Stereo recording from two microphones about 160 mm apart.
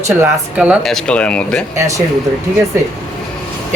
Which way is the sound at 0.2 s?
10° right (ahead or behind).